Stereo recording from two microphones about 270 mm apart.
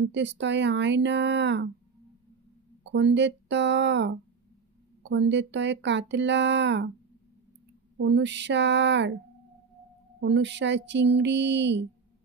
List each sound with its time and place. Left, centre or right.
0.0 s speech: right
2.8 s speech: right
8.0 s speech: right
10.2 s speech: right